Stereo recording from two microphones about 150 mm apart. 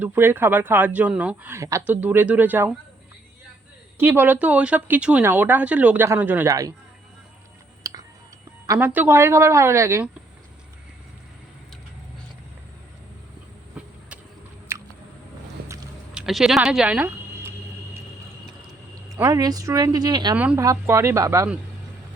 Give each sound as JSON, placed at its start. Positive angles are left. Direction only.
{"t": 0.0, "sound": "speech", "side_deg": -15}
{"t": 4.0, "sound": "speech", "side_deg": -15}
{"t": 6.5, "sound": "a woman's voice", "side_deg": -25}
{"t": 7.9, "sound": "music", "side_deg": -25}
{"t": 8.6, "sound": "a woman's voice", "side_deg": -20}
{"t": 14.7, "sound": "biting", "side_deg": -15}
{"t": 16.1, "sound": "speech", "side_deg": -5}
{"t": 19.1, "sound": "a woman's voice", "side_deg": -25}
{"t": 20.3, "sound": "a woman's voice", "side_deg": -10}